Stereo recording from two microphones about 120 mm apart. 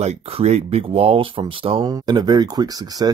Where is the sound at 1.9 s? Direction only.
35° right (ahead or behind).